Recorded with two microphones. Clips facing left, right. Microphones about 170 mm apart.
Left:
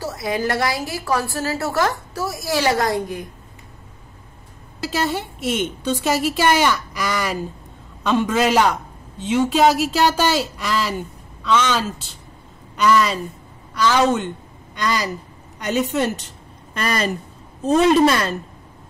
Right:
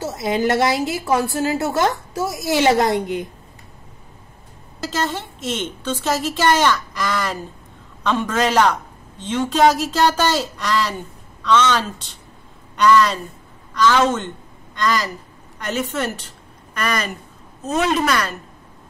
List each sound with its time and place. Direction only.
0.0 s a woman's voice: 20° right (ahead or behind)
4.8 s a woman's voice: 10° left (ahead or behind)
16.7 s a woman's voice: 30° left (ahead or behind)